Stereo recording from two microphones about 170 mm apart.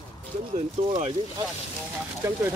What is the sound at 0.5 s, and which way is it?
Speech, 40° right (ahead or behind).